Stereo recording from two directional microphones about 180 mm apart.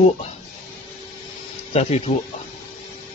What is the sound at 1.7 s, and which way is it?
Speech, 40° left (ahead or behind).